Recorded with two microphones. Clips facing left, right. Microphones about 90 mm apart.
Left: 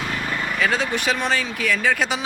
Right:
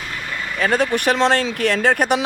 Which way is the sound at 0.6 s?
50° right (ahead or behind).